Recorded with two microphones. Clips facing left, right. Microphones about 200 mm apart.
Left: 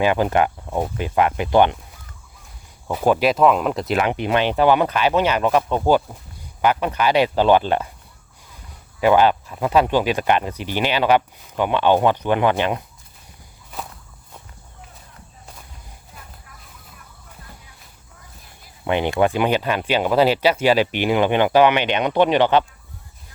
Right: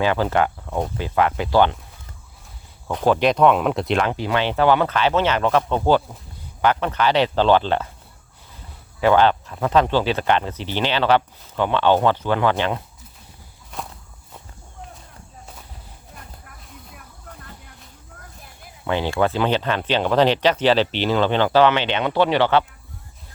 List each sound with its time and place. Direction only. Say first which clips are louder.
0.0 s speech: left 2 dB; 15° left (ahead or behind)
2.8 s speech: even; 10° left (ahead or behind)
4.0 s speech: left 2 dB; 20° left (ahead or behind)
9.0 s speech: left 1 dB; 10° left (ahead or behind)
13.7 s walk: even; 5° left (ahead or behind)
18.9 s speech: left 2 dB; 20° left (ahead or behind)